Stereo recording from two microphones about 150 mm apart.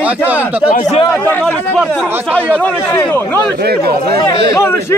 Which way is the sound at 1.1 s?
15° left (ahead or behind).